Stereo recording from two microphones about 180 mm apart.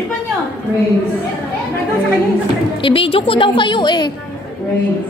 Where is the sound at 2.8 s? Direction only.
30° left (ahead or behind).